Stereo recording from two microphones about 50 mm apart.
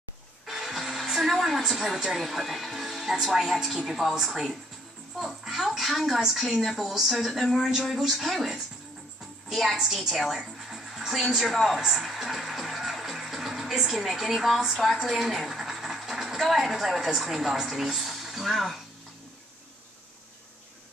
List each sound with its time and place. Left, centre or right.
0.5 s speech: centre
5.1 s music: centre
5.7 s speech: centre